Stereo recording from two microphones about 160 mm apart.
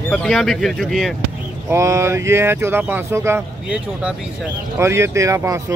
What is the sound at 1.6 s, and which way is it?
Speech, 20° right (ahead or behind).